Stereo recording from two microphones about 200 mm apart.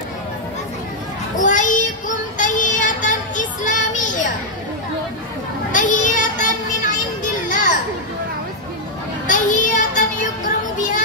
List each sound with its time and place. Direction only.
1.4 s child singing: 40° left (ahead or behind)
5.7 s children playing: 40° left (ahead or behind)
9.3 s children playing: 40° left (ahead or behind)